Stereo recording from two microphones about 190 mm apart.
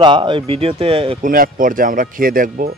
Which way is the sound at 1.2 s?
45° right (ahead or behind).